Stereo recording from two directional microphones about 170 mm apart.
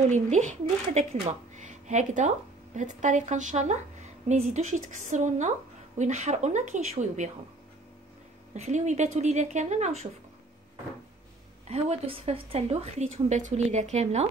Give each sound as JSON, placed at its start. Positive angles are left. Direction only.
{"t": 0.1, "sound": "a woman's voice", "side_deg": -45}
{"t": 8.5, "sound": "a woman's voice", "side_deg": -40}
{"t": 11.7, "sound": "a woman's voice", "side_deg": -35}